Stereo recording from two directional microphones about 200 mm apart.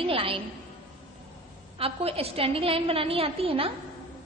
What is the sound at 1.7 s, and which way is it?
A woman's voice, 30° right (ahead or behind).